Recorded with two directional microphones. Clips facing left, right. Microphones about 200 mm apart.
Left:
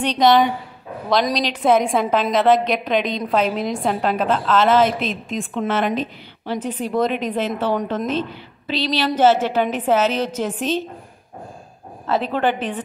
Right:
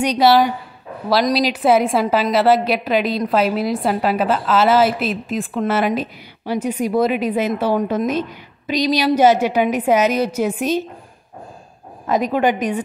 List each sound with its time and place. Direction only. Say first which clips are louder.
0.0 s a woman's voice: right 1 dB; 10° right (ahead or behind)
12.1 s a woman's voice: right 3 dB; 10° right (ahead or behind)